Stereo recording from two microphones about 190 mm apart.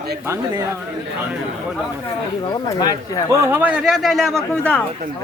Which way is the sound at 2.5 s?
20° left (ahead or behind).